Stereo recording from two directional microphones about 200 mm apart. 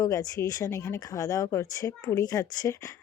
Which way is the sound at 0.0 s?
15° left (ahead or behind).